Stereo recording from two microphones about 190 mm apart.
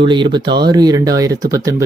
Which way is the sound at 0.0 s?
25° right (ahead or behind).